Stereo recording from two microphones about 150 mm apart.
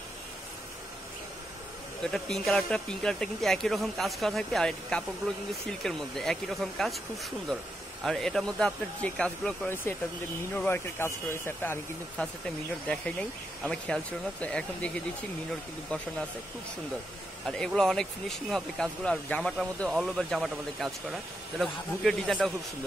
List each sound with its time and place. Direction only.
2.0 s speech: 5° left (ahead or behind)
10.5 s speech: 15° left (ahead or behind)
12.2 s speech: 5° left (ahead or behind)
17.5 s speech: 5° left (ahead or behind)